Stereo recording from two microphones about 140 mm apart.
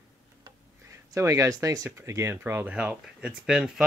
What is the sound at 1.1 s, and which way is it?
Speech, 20° right (ahead or behind).